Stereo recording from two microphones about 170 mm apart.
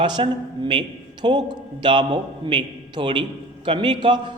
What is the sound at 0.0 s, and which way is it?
A man's voice, 30° right (ahead or behind).